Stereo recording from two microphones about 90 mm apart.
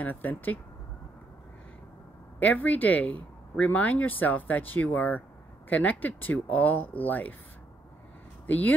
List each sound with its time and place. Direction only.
0.0 s speech: 20° left (ahead or behind)
2.4 s speech: 20° left (ahead or behind)
8.5 s speech: 20° left (ahead or behind)